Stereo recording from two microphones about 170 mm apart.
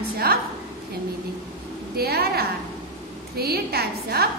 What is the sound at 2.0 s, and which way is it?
A woman's voice, 65° right (ahead or behind).